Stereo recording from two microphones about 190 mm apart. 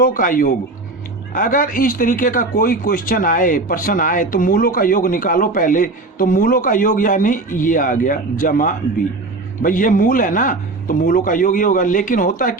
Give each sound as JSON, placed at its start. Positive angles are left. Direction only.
{"t": 0.0, "sound": "speech", "side_deg": 45}